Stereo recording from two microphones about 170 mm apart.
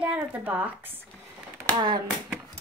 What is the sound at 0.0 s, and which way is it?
Speech, 10° right (ahead or behind).